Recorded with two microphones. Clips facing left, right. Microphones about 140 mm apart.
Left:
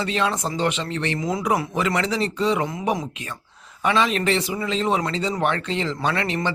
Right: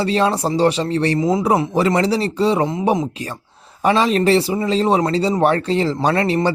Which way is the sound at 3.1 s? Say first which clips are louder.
Right 7 dB; 35° right (ahead or behind).